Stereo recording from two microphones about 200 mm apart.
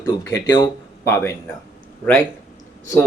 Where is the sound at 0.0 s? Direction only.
15° left (ahead or behind).